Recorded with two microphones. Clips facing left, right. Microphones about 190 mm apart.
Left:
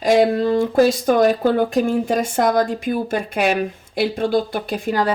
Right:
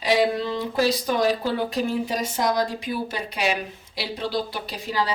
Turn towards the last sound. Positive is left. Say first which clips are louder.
# left 7 dB
turn(degrees=50)  # may be behind; listen again after turning